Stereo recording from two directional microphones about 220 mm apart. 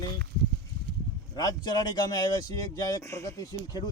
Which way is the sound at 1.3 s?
20° left (ahead or behind).